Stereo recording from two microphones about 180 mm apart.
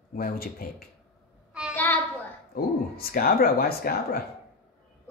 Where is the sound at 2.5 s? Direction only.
55° left (ahead or behind).